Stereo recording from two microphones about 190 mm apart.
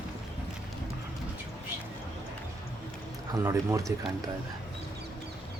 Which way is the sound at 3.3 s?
15° right (ahead or behind).